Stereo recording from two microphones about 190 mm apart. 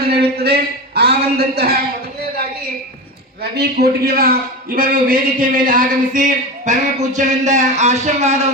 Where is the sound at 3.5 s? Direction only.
55° right (ahead or behind).